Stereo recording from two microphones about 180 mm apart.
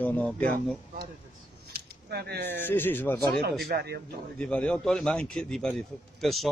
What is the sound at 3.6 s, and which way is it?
Speech, 65° right (ahead or behind).